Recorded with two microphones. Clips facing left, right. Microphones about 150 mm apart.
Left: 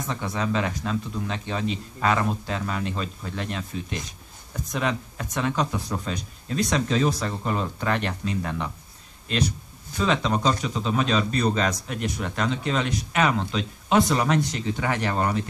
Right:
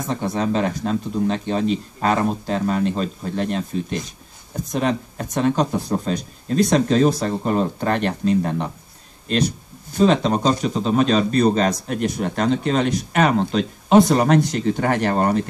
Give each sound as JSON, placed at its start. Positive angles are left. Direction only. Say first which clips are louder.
{"t": 0.0, "sound": "speech", "louder": "right 6 dB", "side_deg": -35}
{"t": 9.9, "sound": "speech", "louder": "right 7 dB", "side_deg": -35}